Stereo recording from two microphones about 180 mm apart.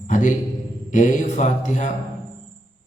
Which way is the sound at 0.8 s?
45° left (ahead or behind).